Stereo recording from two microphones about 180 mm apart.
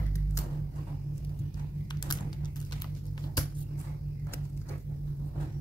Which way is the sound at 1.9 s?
25° left (ahead or behind).